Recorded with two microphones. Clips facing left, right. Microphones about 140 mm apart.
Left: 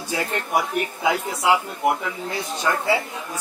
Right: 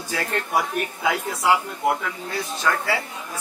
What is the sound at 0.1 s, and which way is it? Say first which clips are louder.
A man's voice: left 1 dB; 20° left (ahead or behind).